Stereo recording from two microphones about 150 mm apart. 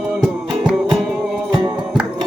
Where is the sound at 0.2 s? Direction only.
5° right (ahead or behind).